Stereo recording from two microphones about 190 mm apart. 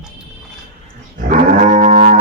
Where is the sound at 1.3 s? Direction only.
40° right (ahead or behind).